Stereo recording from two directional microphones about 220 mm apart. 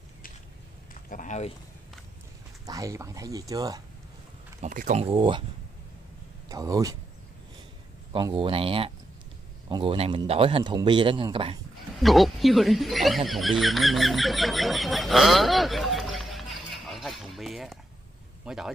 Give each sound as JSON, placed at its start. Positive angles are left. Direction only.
{"t": 1.1, "sound": "speech", "side_deg": 35}
{"t": 2.6, "sound": "speech", "side_deg": -15}
{"t": 4.6, "sound": "speech", "side_deg": -35}
{"t": 6.5, "sound": "speech", "side_deg": -15}
{"t": 8.1, "sound": "speech", "side_deg": -20}
{"t": 12.0, "sound": "speech", "side_deg": 0}